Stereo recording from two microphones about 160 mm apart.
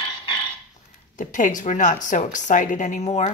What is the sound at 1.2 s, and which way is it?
Speech, 55° left (ahead or behind).